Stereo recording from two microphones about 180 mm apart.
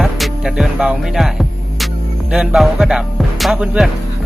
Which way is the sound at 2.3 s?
Centre (ahead or behind).